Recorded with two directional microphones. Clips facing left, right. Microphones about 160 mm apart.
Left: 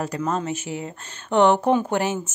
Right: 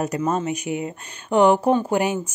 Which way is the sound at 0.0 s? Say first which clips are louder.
Right 3 dB; 20° right (ahead or behind).